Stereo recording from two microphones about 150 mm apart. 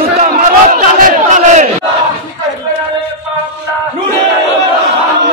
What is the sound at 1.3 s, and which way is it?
Crowd, 55° right (ahead or behind).